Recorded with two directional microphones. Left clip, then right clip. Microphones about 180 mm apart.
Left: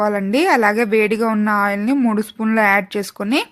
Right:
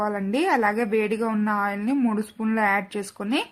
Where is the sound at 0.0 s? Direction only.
35° left (ahead or behind).